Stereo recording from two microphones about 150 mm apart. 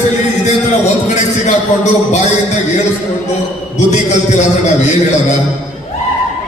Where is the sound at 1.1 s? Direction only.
50° left (ahead or behind).